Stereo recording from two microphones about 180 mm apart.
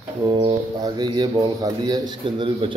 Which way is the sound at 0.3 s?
25° right (ahead or behind).